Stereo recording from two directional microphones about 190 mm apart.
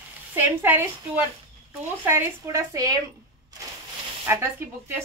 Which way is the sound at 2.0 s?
15° right (ahead or behind).